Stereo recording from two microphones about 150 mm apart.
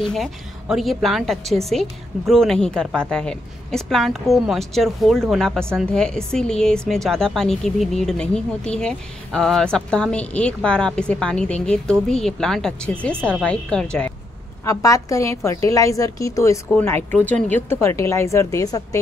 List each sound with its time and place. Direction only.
0.0 s speech: centre (ahead or behind)
14.6 s a woman's voice: 20° left (ahead or behind)